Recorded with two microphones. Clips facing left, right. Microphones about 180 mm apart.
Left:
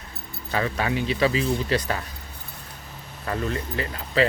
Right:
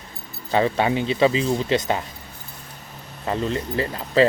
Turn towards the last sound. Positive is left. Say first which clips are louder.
# right 5 dB
turn(degrees=-35)  # may be behind; listen again after turning